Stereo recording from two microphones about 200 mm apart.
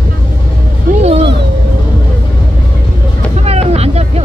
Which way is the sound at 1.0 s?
30° right (ahead or behind).